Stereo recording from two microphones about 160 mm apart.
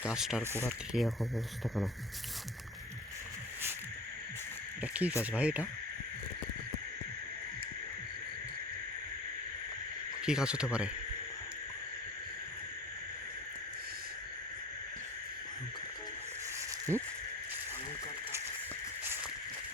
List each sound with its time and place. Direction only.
0.0 s speech: 5° right (ahead or behind)
4.8 s speech: 10° right (ahead or behind)
10.2 s speech: 5° right (ahead or behind)
16.9 s speech: 15° right (ahead or behind)